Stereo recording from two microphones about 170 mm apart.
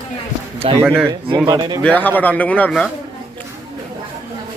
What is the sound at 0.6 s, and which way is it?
Speech, 35° right (ahead or behind).